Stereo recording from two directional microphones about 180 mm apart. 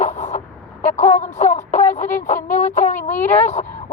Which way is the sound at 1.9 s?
45° left (ahead or behind).